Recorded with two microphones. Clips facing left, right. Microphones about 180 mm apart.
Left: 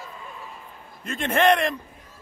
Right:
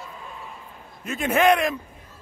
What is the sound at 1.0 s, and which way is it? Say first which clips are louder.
Speech: right 1 dB; 5° right (ahead or behind).